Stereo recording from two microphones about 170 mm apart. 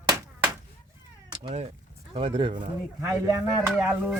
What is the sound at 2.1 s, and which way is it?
Speech, 30° right (ahead or behind).